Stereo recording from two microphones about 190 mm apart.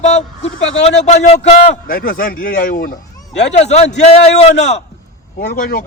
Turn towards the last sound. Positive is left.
turn(degrees=45)  # may be behind; listen again after turning